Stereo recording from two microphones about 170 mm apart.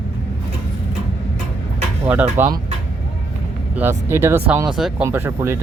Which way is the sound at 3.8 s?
15° right (ahead or behind).